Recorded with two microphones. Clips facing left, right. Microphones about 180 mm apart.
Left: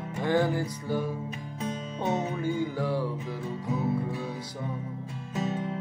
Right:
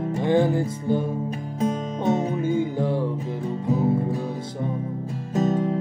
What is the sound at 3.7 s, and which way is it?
Music, 40° right (ahead or behind).